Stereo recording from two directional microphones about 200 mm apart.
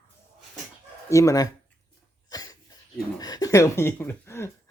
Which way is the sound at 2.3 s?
20° left (ahead or behind).